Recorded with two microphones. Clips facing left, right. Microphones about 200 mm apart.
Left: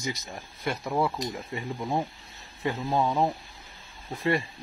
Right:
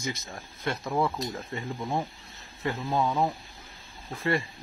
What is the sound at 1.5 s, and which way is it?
Speech, 15° left (ahead or behind).